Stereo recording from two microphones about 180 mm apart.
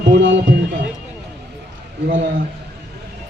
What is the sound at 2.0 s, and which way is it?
Speech, 60° right (ahead or behind).